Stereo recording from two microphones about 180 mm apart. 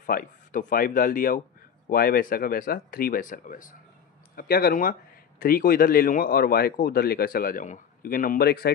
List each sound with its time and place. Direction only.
0.0 s speech: 50° left (ahead or behind)